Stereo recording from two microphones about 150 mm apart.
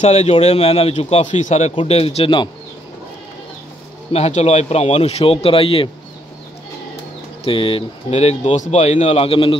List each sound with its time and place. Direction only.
0.0 s speech: 50° left (ahead or behind)
4.1 s speech: 45° left (ahead or behind)
7.4 s speech: 35° left (ahead or behind)